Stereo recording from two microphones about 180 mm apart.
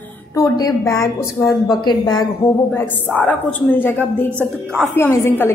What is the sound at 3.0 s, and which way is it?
A woman's voice, 10° left (ahead or behind).